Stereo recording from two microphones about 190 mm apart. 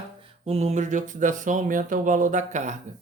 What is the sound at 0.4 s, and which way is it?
Speech, 35° right (ahead or behind).